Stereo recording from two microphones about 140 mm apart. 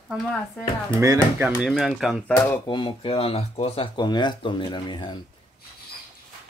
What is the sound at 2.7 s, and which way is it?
Speech, 35° left (ahead or behind).